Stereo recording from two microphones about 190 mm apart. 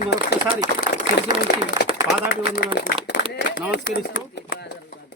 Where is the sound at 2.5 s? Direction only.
50° left (ahead or behind).